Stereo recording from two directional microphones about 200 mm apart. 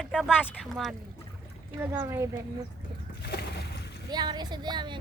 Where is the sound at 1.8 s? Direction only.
10° right (ahead or behind).